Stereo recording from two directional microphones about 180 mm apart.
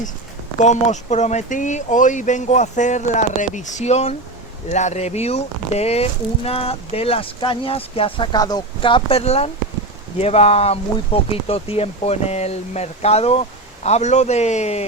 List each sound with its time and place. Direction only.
0.6 s speech: 40° left (ahead or behind)